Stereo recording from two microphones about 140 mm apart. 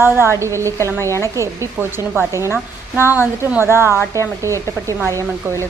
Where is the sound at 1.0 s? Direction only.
20° left (ahead or behind).